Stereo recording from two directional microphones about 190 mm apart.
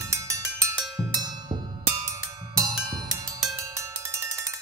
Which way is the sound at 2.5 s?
20° right (ahead or behind).